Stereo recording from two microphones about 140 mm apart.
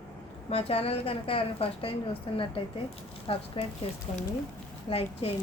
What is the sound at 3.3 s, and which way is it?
Speech, 40° left (ahead or behind).